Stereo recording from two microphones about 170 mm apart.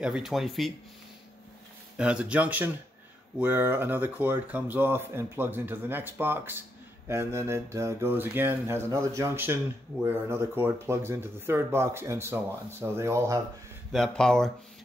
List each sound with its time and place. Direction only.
0.0 s speech: 5° right (ahead or behind)
2.0 s speech: 5° right (ahead or behind)
13.9 s speech: 5° left (ahead or behind)